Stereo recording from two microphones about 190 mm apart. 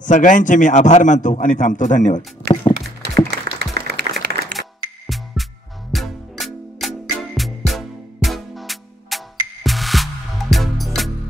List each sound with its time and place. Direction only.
0.0 s a man's voice: 45° left (ahead or behind)
2.4 s music: 60° right (ahead or behind)
3.0 s applause: 60° right (ahead or behind)
4.6 s music: centre (ahead or behind)